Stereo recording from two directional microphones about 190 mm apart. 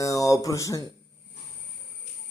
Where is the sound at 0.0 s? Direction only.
15° left (ahead or behind).